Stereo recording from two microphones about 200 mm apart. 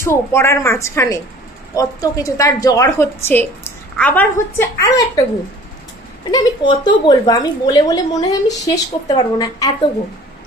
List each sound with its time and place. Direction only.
0.0 s a woman's voice: 15° left (ahead or behind)
6.3 s a woman's voice: 20° left (ahead or behind)